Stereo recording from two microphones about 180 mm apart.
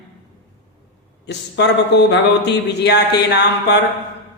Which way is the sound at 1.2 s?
70° left (ahead or behind).